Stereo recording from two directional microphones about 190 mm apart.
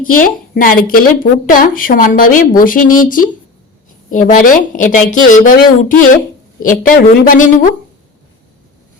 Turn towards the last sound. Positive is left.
turn(degrees=45)  # may be behind; listen again after turning